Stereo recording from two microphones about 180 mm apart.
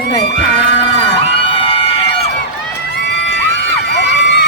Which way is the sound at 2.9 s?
70° left (ahead or behind).